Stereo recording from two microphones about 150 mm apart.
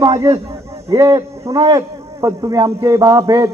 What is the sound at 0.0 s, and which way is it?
A man's voice, 25° right (ahead or behind).